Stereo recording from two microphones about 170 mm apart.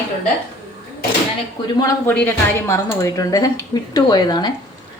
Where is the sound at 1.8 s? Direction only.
10° left (ahead or behind).